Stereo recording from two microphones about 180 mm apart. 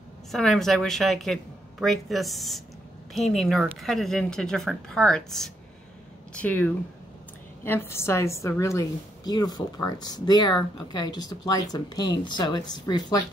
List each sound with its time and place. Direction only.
0.3 s a woman's voice: centre (ahead or behind); by 13.2 s 25° left (ahead or behind)